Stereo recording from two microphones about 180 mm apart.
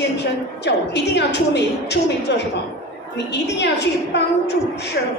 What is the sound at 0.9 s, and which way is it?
A woman's voice, 70° left (ahead or behind).